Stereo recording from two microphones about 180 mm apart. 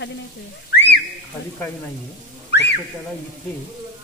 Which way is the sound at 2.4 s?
70° left (ahead or behind).